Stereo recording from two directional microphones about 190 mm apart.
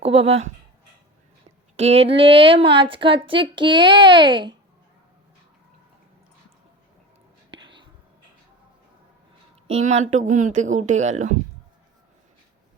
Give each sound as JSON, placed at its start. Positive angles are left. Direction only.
{"t": 0.0, "sound": "speech", "side_deg": -30}
{"t": 1.7, "sound": "speech", "side_deg": -35}
{"t": 7.5, "sound": "whispering", "side_deg": -25}
{"t": 9.6, "sound": "speech", "side_deg": -35}